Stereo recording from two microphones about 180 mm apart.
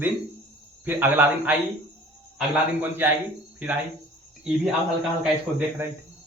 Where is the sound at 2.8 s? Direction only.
10° right (ahead or behind).